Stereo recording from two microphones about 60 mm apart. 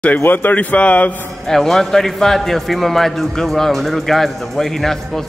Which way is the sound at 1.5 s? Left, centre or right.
Centre.